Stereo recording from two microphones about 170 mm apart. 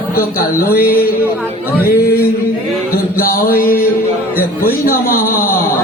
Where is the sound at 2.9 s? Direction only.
60° left (ahead or behind).